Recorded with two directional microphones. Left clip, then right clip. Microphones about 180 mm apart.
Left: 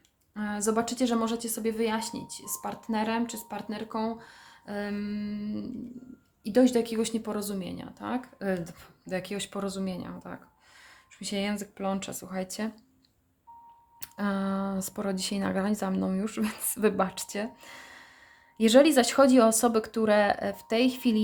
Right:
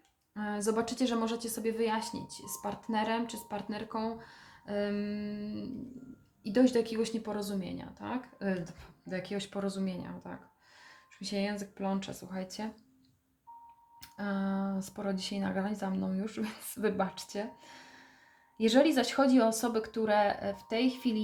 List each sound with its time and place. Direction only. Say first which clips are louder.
0.3 s a woman's voice: left 3 dB; 30° left (ahead or behind)
14.0 s speech: left 5 dB; 45° left (ahead or behind)